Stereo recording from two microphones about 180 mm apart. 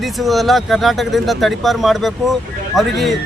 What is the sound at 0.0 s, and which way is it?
Speech, centre (ahead or behind).